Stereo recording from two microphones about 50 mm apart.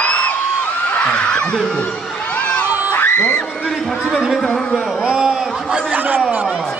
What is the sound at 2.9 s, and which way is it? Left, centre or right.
Crowd, left.